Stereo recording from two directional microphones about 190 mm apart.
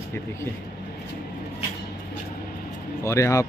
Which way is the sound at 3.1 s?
15° left (ahead or behind).